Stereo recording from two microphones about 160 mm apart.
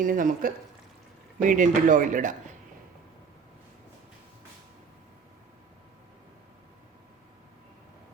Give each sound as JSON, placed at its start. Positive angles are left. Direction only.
{"t": 0.0, "sound": "speech", "side_deg": -60}